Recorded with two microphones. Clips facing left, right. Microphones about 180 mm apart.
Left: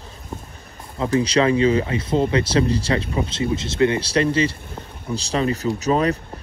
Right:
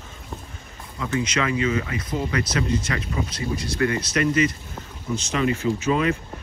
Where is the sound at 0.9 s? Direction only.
35° left (ahead or behind).